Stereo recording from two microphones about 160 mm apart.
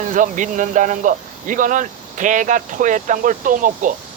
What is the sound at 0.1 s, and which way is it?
Speech, 55° right (ahead or behind).